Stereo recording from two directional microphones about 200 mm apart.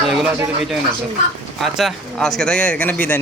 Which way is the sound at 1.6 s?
Centre (ahead or behind).